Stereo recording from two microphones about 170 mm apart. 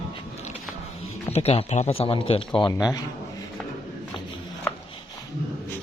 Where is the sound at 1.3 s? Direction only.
35° left (ahead or behind).